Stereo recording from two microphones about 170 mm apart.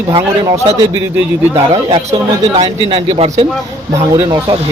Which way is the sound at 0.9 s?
15° right (ahead or behind).